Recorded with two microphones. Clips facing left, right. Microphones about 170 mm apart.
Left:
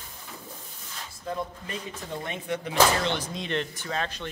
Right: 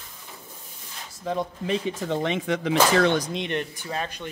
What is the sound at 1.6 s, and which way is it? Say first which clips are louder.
Speech: right 10 dB; 90° right.